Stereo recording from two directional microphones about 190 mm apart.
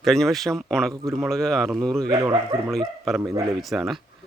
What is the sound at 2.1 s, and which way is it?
Speech, 20° right (ahead or behind).